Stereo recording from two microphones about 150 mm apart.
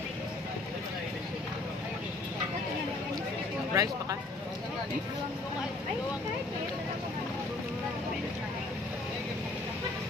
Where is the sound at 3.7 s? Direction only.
25° right (ahead or behind).